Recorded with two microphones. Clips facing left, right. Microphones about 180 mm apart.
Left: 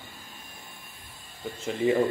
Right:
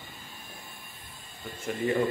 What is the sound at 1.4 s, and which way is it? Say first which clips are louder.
Speech: left 4 dB; 20° left (ahead or behind).